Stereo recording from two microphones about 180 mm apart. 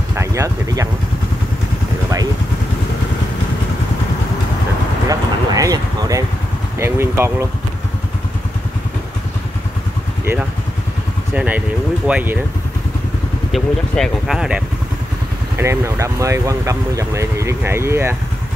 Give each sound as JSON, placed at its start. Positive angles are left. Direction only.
{"t": 0.1, "sound": "speech", "side_deg": -15}
{"t": 5.0, "sound": "a sound", "side_deg": -20}
{"t": 11.3, "sound": "speech", "side_deg": -10}
{"t": 13.5, "sound": "speech", "side_deg": 0}
{"t": 15.5, "sound": "speech", "side_deg": -15}